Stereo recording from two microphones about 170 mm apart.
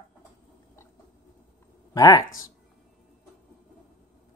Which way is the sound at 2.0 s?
20° left (ahead or behind).